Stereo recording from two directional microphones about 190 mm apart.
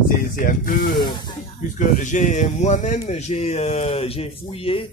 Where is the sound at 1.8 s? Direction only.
45° left (ahead or behind).